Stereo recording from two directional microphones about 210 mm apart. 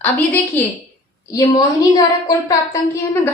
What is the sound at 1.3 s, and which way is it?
A woman's voice, 20° left (ahead or behind).